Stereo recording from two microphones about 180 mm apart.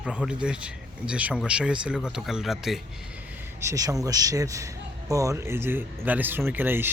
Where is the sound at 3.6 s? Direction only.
20° right (ahead or behind).